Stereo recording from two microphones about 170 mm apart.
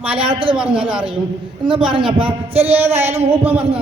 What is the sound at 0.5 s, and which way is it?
Speech, 5° right (ahead or behind).